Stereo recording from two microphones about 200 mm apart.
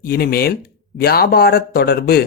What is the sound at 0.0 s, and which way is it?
A man's voice, 50° left (ahead or behind).